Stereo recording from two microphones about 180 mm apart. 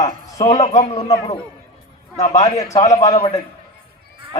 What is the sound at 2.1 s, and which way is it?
Speech, 40° left (ahead or behind).